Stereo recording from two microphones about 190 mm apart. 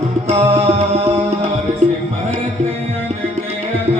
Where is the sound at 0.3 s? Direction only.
35° right (ahead or behind).